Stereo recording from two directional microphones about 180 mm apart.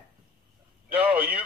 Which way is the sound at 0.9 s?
10° right (ahead or behind).